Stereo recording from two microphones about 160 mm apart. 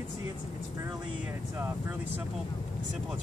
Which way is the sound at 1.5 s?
15° right (ahead or behind).